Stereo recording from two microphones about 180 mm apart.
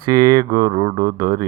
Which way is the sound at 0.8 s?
35° right (ahead or behind).